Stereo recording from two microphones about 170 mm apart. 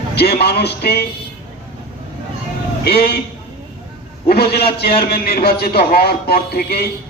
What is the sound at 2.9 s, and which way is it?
Speech, 65° left (ahead or behind).